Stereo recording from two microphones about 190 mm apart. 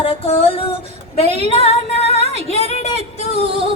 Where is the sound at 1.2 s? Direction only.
35° right (ahead or behind).